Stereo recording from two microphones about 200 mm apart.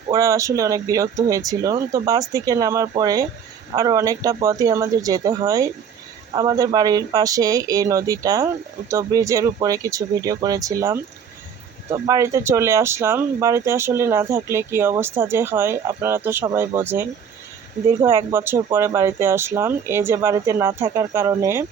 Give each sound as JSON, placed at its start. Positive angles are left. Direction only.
{"t": 0.1, "sound": "speech", "side_deg": -15}